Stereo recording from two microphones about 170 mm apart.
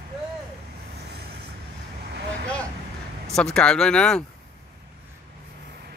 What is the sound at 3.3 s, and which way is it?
Speech, 5° left (ahead or behind).